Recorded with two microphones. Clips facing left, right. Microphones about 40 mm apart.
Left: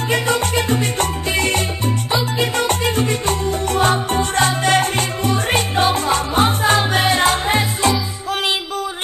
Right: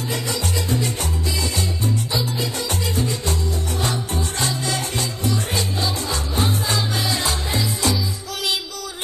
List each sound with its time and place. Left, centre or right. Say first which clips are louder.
0.1 s salsa music: left 9 dB; left
2.3 s music: left 7 dB; left